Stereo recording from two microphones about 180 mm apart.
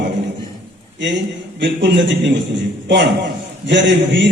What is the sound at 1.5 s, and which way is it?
A man's voice, 80° right.